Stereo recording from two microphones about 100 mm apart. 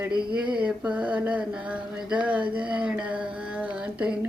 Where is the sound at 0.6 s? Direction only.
10° right (ahead or behind).